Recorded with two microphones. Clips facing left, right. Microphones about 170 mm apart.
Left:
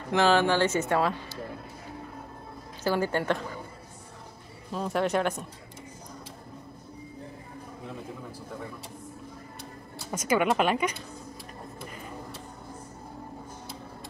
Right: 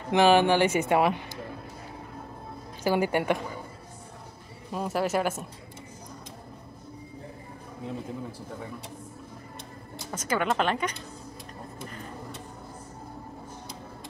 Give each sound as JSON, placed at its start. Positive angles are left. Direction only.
{"t": 0.1, "sound": "speech", "side_deg": -15}
{"t": 2.8, "sound": "speech", "side_deg": -15}
{"t": 4.7, "sound": "speech", "side_deg": -5}
{"t": 10.1, "sound": "a woman's voice", "side_deg": 10}